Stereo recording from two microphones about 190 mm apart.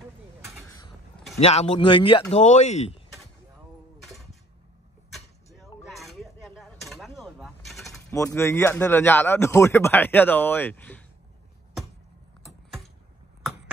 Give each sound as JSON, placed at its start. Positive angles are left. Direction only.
{"t": 0.7, "sound": "mechanisms", "side_deg": 20}
{"t": 1.4, "sound": "speech", "side_deg": 35}
{"t": 4.0, "sound": "a sound", "side_deg": 0}
{"t": 5.1, "sound": "vehicle", "side_deg": 0}
{"t": 5.9, "sound": "a sound", "side_deg": 0}
{"t": 8.1, "sound": "a man's voice", "side_deg": 15}